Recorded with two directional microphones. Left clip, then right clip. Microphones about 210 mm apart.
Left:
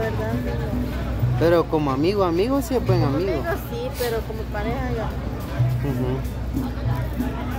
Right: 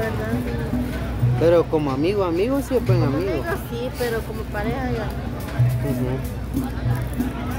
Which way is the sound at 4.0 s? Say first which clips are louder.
Even; centre (ahead or behind).